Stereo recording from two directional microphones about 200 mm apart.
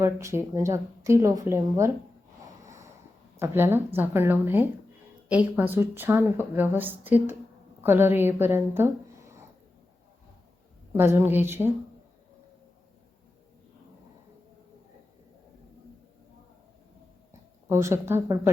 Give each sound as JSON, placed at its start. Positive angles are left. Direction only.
{"t": 0.0, "sound": "speech", "side_deg": -15}
{"t": 2.6, "sound": "a sound", "side_deg": -15}
{"t": 3.3, "sound": "speech", "side_deg": -10}
{"t": 10.9, "sound": "speech", "side_deg": -10}
{"t": 17.7, "sound": "speech", "side_deg": -15}